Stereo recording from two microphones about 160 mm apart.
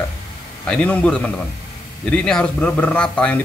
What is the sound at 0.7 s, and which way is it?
Speech, 5° left (ahead or behind).